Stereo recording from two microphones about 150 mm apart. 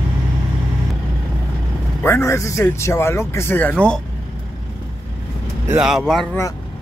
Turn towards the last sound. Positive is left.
turn(degrees=0)  # may be behind; listen again after turning